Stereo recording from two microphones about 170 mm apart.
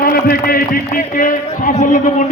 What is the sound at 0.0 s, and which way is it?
A man's voice, 60° left (ahead or behind).